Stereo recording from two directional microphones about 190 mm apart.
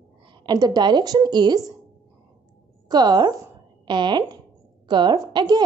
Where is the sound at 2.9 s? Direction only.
20° right (ahead or behind).